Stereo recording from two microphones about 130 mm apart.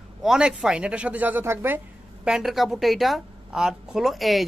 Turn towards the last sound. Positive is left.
turn(degrees=0)  # may be behind; listen again after turning